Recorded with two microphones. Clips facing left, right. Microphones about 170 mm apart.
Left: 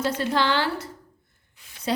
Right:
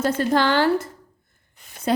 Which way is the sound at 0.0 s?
45° right (ahead or behind).